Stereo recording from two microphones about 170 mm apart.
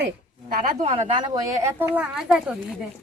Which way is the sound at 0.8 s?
45° right (ahead or behind).